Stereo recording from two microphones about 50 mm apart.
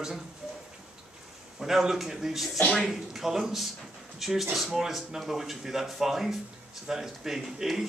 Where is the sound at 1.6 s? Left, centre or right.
Centre.